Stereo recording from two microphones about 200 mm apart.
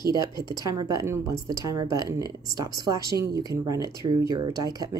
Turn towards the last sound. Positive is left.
turn(degrees=-20)  # may be behind; listen again after turning